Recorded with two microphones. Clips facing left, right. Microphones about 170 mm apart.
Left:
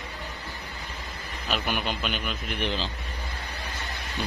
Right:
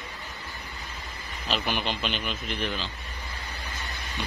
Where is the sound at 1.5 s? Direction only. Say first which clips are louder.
Even; 5° left (ahead or behind).